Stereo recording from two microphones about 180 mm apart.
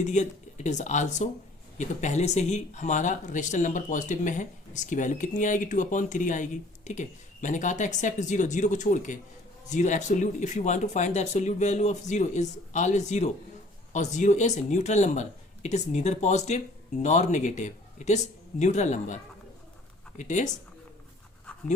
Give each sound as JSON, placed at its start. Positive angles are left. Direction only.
{"t": 0.0, "sound": "speech", "side_deg": 40}